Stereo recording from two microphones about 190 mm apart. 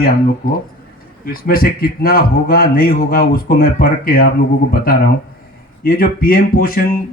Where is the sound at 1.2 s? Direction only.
50° left (ahead or behind).